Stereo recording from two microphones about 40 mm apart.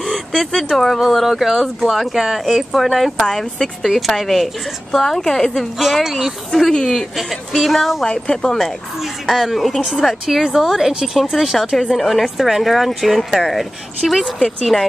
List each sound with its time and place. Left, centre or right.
0.0 s speech: centre
3.3 s speech: centre
3.8 s speech: centre
5.8 s speech: centre
6.5 s speech: centre
7.2 s speech: centre
8.0 s speech: centre
8.5 s speech: centre
9.2 s a woman's voice: centre
11.3 s speech: centre